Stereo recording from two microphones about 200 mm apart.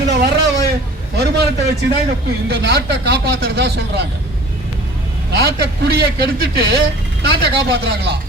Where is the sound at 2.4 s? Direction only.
55° right (ahead or behind).